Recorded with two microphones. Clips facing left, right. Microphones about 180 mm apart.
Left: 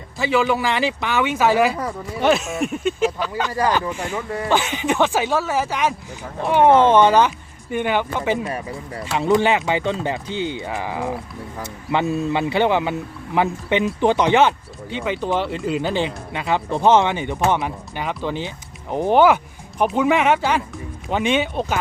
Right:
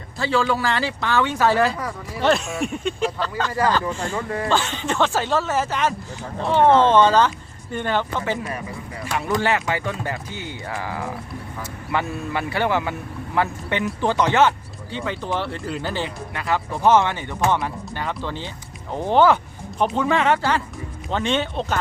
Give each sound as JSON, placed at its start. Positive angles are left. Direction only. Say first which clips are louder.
{"t": 0.2, "sound": "speech", "louder": "left 2 dB", "side_deg": 15}